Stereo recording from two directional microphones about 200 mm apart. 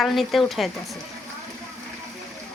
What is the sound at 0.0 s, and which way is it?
Speech, centre (ahead or behind).